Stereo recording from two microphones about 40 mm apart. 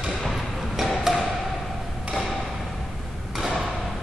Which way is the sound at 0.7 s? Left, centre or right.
Centre.